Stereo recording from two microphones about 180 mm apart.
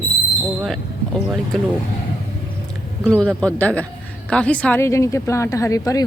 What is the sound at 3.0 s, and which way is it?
A man's voice, 5° left (ahead or behind).